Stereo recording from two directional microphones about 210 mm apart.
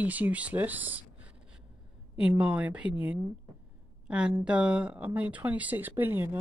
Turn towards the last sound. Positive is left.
turn(degrees=-10)  # may be behind; listen again after turning